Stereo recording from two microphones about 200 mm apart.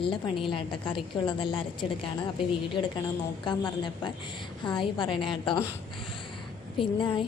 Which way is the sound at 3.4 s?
20° left (ahead or behind).